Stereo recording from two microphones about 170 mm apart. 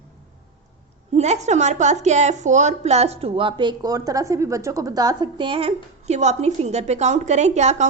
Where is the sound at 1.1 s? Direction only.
40° right (ahead or behind).